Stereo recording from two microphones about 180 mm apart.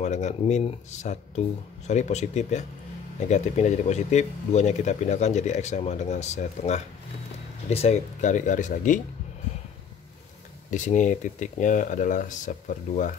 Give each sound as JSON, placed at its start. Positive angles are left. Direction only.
{"t": 0.0, "sound": "speech", "side_deg": 40}
{"t": 10.7, "sound": "speech", "side_deg": 45}